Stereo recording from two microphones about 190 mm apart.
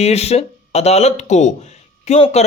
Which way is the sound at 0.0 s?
35° left (ahead or behind).